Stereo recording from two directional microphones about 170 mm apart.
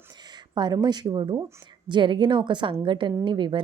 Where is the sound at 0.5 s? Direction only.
25° right (ahead or behind).